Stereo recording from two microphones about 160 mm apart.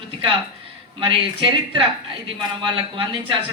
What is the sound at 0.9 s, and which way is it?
A man's voice, 35° right (ahead or behind).